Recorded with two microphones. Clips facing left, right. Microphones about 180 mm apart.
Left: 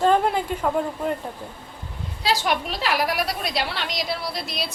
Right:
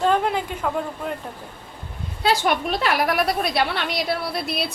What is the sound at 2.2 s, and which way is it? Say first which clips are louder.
A woman's voice: right 3 dB; 55° right (ahead or behind).